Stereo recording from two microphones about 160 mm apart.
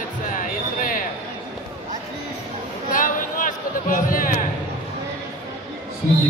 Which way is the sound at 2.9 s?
55° left (ahead or behind).